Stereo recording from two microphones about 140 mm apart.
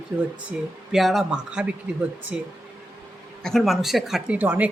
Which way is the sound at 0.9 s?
Centre (ahead or behind).